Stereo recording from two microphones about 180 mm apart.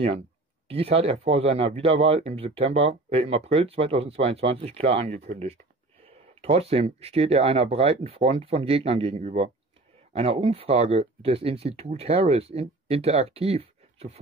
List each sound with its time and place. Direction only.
0.7 s speech: 30° right (ahead or behind)